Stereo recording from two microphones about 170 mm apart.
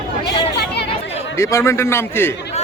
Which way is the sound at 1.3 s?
15° left (ahead or behind).